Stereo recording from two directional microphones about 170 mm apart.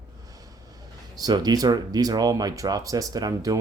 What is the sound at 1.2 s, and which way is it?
Speech, 25° right (ahead or behind).